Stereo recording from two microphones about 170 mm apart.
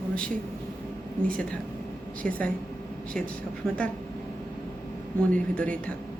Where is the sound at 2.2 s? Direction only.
10° left (ahead or behind).